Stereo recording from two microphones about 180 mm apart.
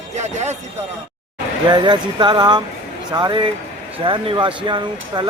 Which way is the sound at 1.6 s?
25° right (ahead or behind).